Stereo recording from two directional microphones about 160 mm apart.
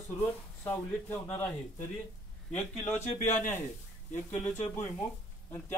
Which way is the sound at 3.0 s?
50° left (ahead or behind).